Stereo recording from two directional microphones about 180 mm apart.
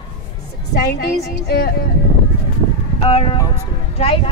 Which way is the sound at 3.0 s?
30° left (ahead or behind).